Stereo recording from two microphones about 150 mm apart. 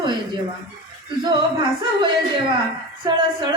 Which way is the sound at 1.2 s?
30° right (ahead or behind).